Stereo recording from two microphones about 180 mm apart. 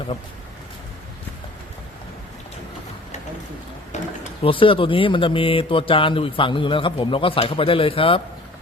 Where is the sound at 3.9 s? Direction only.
40° left (ahead or behind).